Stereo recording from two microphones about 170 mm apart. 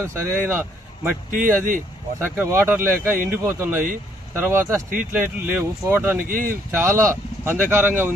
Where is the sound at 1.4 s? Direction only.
50° right (ahead or behind).